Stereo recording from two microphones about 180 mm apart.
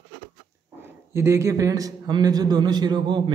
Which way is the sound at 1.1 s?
15° right (ahead or behind).